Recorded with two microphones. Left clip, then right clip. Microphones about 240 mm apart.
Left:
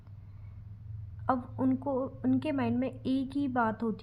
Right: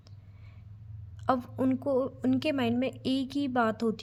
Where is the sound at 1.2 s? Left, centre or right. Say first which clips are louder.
Right 2 dB; right.